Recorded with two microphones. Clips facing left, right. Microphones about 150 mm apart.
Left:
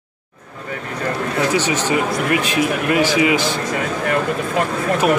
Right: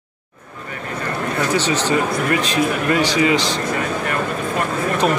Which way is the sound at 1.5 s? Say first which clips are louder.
Right 2 dB; 10° left (ahead or behind).